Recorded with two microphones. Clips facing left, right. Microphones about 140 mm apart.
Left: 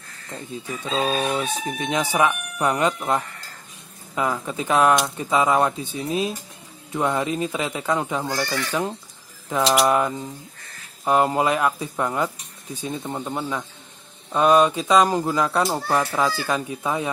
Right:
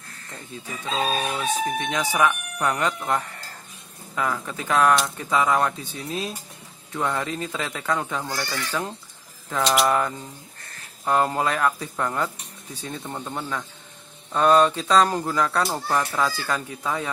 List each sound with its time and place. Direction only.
1.3 s speech: 25° left (ahead or behind)